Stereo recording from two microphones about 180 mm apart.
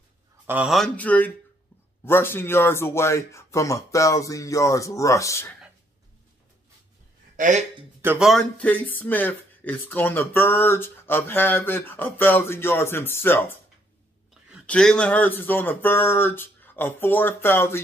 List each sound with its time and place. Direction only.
0.5 s a man's voice: 5° right (ahead or behind); by 5.5 s 15° left (ahead or behind)
7.3 s speech: 45° right (ahead or behind)
8.0 s a man's voice: 10° right (ahead or behind)
8.3 s speech: 5° left (ahead or behind)
14.7 s speech: 5° left (ahead or behind)